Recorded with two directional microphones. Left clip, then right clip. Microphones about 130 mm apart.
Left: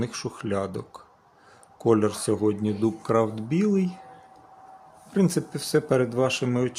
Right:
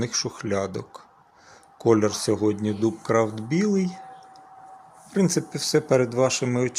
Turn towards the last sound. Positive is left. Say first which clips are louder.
# right 1 dB
turn(degrees=5)  # may be behind; listen again after turning